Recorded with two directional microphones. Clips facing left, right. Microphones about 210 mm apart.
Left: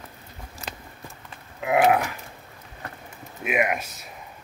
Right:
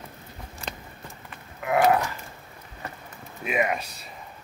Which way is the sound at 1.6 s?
20° left (ahead or behind).